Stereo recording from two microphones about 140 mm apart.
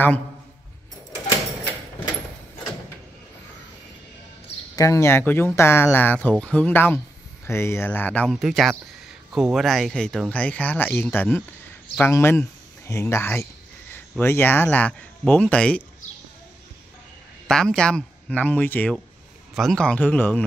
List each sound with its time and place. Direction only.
4.7 s speech: 20° left (ahead or behind)
8.3 s speech: centre (ahead or behind); by 11.4 s 15° left (ahead or behind)
12.0 s a sound: 15° left (ahead or behind)
14.2 s speech: 15° left (ahead or behind)
17.5 s speech: 5° left (ahead or behind)
19.5 s speech: centre (ahead or behind)